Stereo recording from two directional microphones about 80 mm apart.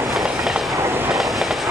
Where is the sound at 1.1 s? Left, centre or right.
Centre.